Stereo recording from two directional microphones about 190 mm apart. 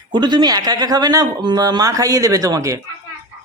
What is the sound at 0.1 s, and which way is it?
Speech, 25° right (ahead or behind).